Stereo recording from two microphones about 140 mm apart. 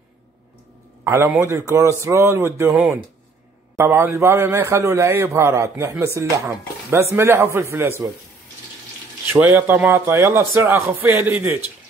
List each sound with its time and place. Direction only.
1.0 s a man's voice: 20° right (ahead or behind)
3.7 s a man's voice: 15° right (ahead or behind)
9.3 s a man's voice: 15° right (ahead or behind)